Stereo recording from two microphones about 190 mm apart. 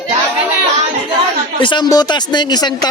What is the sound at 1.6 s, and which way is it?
Speech, 25° left (ahead or behind).